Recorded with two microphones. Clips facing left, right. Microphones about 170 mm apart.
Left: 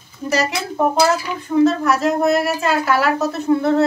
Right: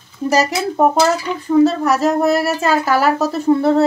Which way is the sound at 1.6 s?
40° right (ahead or behind).